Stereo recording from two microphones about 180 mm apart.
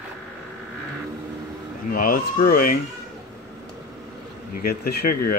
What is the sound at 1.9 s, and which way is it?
Speech, 50° left (ahead or behind).